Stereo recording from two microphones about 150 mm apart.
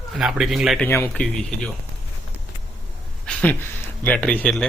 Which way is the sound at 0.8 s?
15° left (ahead or behind).